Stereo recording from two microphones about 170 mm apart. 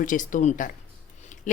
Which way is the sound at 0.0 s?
50° left (ahead or behind).